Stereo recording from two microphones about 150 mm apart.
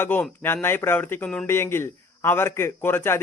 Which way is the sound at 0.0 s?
15° left (ahead or behind).